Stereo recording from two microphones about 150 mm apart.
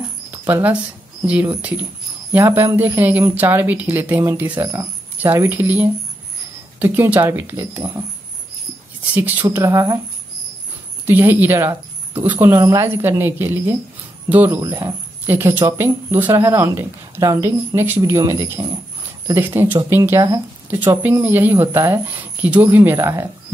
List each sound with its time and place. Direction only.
0.3 s mouse: 10° right (ahead or behind)
1.2 s speech: 10° right (ahead or behind)
9.1 s speech: 10° right (ahead or behind)
11.1 s speech: 15° right (ahead or behind)